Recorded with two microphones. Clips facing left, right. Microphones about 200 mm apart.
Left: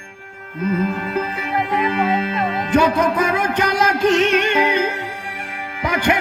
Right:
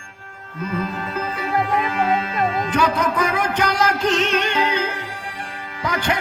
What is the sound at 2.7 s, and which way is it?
Music, 25° left (ahead or behind).